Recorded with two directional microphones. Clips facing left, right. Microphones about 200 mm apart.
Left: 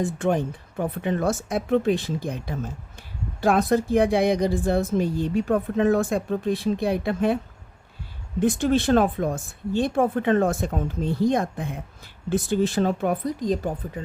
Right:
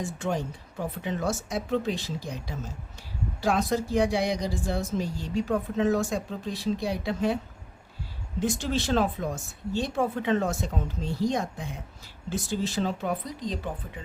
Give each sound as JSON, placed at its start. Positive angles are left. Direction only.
{"t": 0.0, "sound": "a woman's voice", "side_deg": 55}
{"t": 8.4, "sound": "a woman's voice", "side_deg": 55}